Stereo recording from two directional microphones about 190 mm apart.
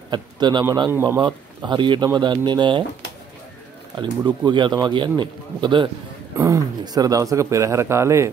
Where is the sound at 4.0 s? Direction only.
25° right (ahead or behind).